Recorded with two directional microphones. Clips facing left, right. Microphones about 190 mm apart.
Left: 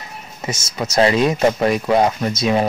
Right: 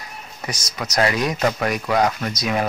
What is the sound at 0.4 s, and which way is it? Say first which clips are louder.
Speech: left 5 dB; 25° left (ahead or behind).